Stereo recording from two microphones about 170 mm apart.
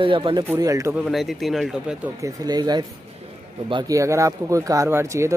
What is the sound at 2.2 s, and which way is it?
A man's voice, 25° right (ahead or behind).